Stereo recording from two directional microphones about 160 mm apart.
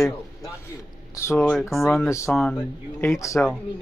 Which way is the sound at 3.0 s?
20° left (ahead or behind).